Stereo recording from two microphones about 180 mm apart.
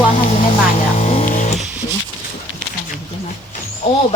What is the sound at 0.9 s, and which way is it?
Music, 45° left (ahead or behind).